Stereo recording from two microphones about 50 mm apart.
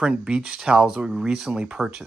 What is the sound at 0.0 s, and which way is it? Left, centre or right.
Speech, centre.